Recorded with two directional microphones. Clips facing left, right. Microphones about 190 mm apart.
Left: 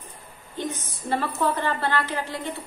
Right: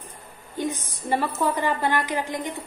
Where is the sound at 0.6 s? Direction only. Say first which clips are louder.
Right 3 dB; 15° right (ahead or behind).